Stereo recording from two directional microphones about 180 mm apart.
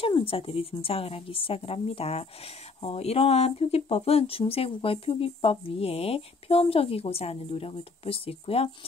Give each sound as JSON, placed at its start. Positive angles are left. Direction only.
{"t": 0.0, "sound": "speech", "side_deg": 30}